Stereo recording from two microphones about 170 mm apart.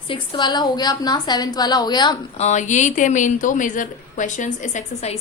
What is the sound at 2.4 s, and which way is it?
A woman's voice, 45° left (ahead or behind).